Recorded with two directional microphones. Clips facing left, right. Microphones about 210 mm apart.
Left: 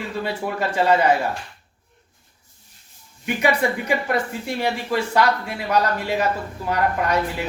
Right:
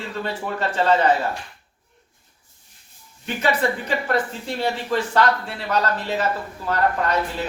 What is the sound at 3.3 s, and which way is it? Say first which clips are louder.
Speech: left 1 dB; 10° left (ahead or behind).